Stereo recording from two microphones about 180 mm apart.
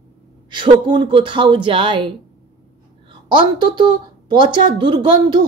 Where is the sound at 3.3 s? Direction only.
25° right (ahead or behind).